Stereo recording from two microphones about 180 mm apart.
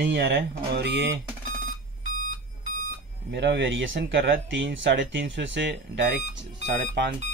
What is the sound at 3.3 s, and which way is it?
Speech, 75° right (ahead or behind).